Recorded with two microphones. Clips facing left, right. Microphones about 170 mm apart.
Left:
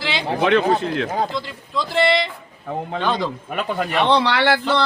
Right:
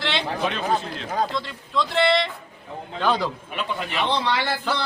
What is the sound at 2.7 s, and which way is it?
Speech, 65° left (ahead or behind).